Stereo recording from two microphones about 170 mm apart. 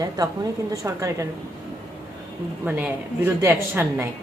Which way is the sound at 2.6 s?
10° right (ahead or behind).